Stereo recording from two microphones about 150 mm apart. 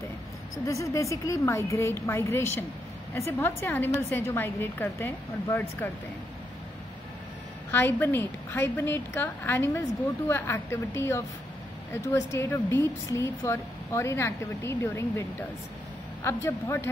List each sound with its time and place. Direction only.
0.7 s a woman's voice: 20° left (ahead or behind)
7.7 s a woman's voice: 15° left (ahead or behind)
16.3 s a woman's voice: 15° left (ahead or behind)